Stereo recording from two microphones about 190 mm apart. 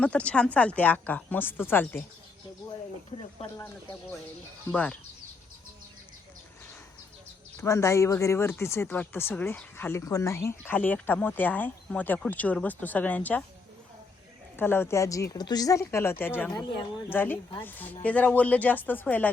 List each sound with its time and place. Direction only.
0.0 s speech: 5° left (ahead or behind)
3.4 s speech: 30° left (ahead or behind)
4.7 s speech: 5° left (ahead or behind)
7.6 s speech: 15° left (ahead or behind)
14.5 s speech: 10° left (ahead or behind)